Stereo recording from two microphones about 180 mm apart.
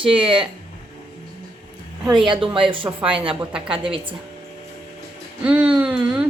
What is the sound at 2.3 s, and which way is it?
Speech, 30° right (ahead or behind).